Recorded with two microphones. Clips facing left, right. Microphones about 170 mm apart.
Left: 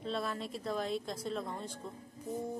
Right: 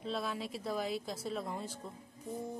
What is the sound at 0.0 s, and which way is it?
Speech, centre (ahead or behind).